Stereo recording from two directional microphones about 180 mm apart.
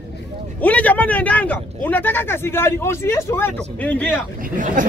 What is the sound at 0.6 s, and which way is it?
Speech, 10° left (ahead or behind).